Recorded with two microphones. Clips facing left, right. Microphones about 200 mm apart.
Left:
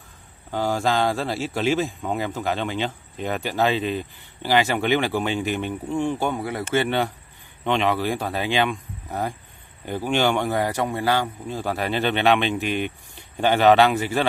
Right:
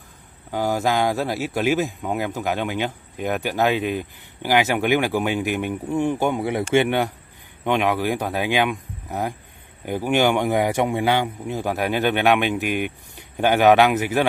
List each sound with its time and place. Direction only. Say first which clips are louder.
0.5 s speech: right 1 dB; 10° right (ahead or behind)